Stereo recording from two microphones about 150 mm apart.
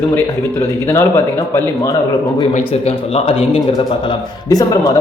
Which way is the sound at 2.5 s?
40° left (ahead or behind).